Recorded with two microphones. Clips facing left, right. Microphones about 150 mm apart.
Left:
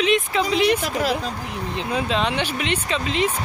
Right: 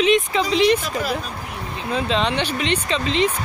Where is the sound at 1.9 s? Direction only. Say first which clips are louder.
Right 2 dB; 10° left (ahead or behind).